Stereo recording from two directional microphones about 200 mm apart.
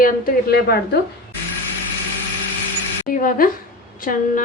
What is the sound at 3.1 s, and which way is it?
A woman's voice, 45° left (ahead or behind).